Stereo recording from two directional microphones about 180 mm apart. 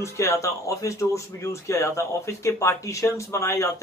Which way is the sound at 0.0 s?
15° left (ahead or behind).